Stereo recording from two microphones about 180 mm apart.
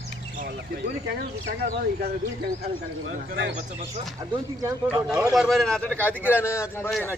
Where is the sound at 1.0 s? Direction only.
60° right (ahead or behind).